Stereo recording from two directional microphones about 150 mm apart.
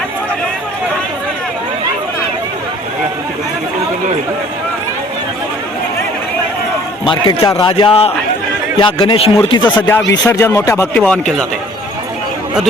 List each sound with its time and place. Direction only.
7.1 s a man's voice: 30° left (ahead or behind)
9.6 s speech: 10° left (ahead or behind)
11.0 s speech: 5° left (ahead or behind)